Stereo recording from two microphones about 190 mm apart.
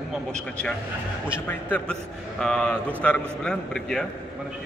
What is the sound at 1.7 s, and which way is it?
A man's voice, 5° left (ahead or behind).